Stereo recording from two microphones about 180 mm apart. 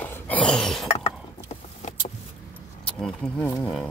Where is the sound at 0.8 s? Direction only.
35° left (ahead or behind).